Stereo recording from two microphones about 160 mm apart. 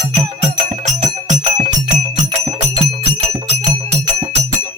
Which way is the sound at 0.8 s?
45° right (ahead or behind).